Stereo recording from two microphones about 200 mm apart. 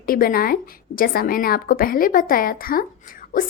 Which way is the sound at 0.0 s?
45° left (ahead or behind).